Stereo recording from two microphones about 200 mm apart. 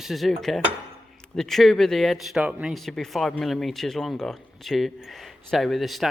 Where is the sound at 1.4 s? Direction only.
Centre (ahead or behind).